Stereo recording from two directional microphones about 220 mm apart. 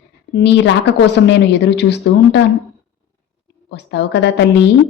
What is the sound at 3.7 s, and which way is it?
Speech, 50° left (ahead or behind).